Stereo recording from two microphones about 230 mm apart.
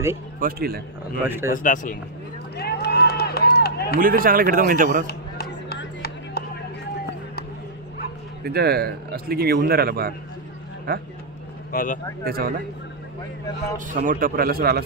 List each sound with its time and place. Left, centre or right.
0.4 s a man's voice: right
1.2 s speech: centre
1.5 s speech: left
2.5 s run: left
4.0 s a man's voice: right
5.0 s a sound: left
8.5 s a man's voice: right
11.7 s speech: left
12.3 s a man's voice: right
13.7 s a man's voice: right